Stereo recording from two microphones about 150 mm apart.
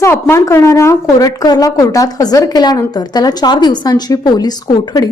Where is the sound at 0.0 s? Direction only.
15° left (ahead or behind).